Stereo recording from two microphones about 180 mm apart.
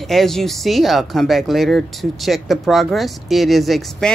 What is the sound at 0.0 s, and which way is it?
Speech, centre (ahead or behind).